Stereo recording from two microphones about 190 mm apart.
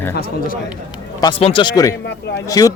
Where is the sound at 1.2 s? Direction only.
25° left (ahead or behind).